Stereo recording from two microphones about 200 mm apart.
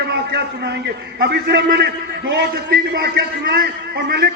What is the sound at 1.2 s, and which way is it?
A man's voice, 55° right (ahead or behind).